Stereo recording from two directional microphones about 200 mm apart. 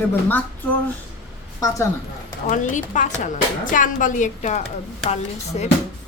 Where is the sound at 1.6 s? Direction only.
15° left (ahead or behind).